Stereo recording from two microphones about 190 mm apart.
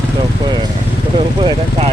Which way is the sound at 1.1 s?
30° right (ahead or behind).